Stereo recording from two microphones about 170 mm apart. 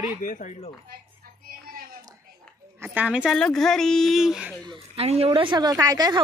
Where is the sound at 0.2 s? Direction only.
50° left (ahead or behind).